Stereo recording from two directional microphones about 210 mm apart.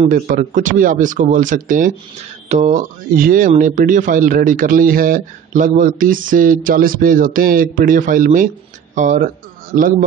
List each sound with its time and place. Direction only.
0.0 s speech: 40° right (ahead or behind)